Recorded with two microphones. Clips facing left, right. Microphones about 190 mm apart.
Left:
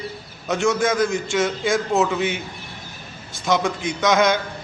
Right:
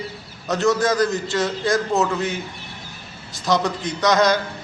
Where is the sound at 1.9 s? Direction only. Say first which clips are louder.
Left 1 dB; 15° left (ahead or behind).